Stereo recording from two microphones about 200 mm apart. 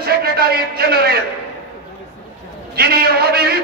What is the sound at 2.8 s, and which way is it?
Speech, 50° right (ahead or behind).